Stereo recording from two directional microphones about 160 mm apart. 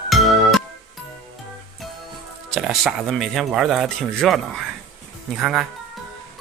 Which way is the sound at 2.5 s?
Centre (ahead or behind).